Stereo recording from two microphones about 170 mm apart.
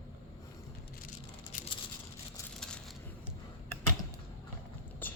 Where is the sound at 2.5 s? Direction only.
5° left (ahead or behind).